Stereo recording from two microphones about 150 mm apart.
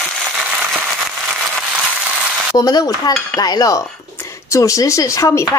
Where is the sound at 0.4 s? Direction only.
10° right (ahead or behind).